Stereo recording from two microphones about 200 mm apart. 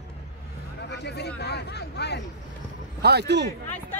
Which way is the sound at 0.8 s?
55° left (ahead or behind).